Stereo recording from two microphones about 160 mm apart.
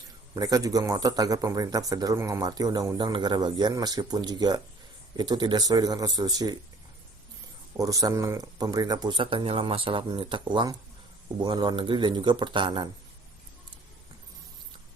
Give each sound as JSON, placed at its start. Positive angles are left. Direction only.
{"t": 0.3, "sound": "speech", "side_deg": -25}
{"t": 7.8, "sound": "speech", "side_deg": -20}